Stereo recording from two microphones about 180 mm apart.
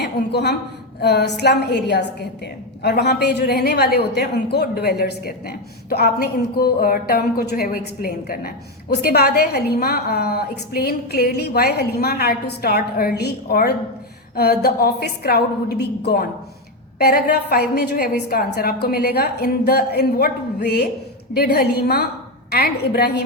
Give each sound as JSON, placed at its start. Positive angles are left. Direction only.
{"t": 0.0, "sound": "a woman's voice", "side_deg": 65}